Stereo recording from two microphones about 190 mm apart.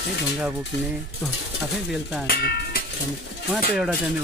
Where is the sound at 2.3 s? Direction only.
55° left (ahead or behind).